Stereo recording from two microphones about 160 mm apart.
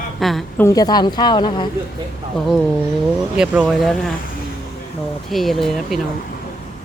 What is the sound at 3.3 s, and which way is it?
Speech, centre (ahead or behind).